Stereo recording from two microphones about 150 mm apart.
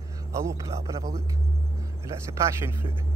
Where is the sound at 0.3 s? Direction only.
20° right (ahead or behind).